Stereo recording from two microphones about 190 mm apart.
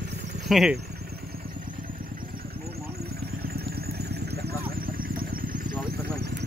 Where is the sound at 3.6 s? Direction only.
55° right (ahead or behind).